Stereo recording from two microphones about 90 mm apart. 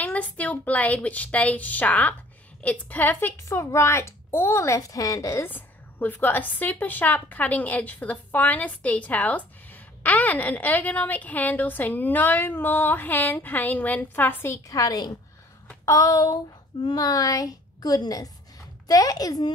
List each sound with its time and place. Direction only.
0.0 s a woman's voice: 15° left (ahead or behind)
3.4 s a woman's voice: 30° left (ahead or behind)
5.5 s a woman's voice: 20° left (ahead or behind)
14.7 s a woman's voice: 45° left (ahead or behind)